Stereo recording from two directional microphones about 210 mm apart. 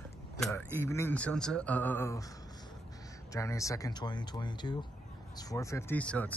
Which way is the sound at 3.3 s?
15° left (ahead or behind).